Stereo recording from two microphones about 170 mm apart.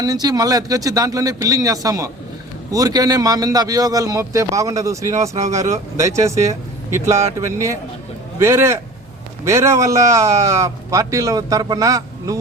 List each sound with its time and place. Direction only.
0.0 s a man's voice: 20° right (ahead or behind)